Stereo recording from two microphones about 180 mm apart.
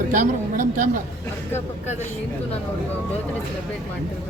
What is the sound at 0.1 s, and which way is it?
Speech, 45° right (ahead or behind).